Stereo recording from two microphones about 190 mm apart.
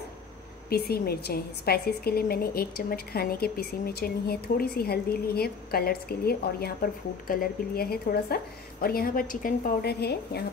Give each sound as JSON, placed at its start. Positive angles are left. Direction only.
{"t": 0.7, "sound": "a woman's voice", "side_deg": 55}